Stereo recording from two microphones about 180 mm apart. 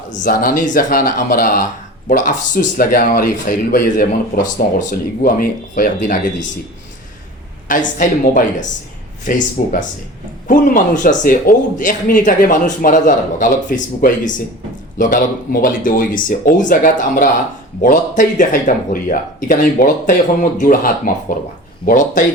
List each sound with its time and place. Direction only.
0.1 s speech: 50° left (ahead or behind)
7.7 s speech: 50° left (ahead or behind)
10.5 s a man's voice: 45° left (ahead or behind)